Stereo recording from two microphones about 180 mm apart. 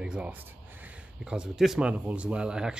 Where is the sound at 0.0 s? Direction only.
5° right (ahead or behind).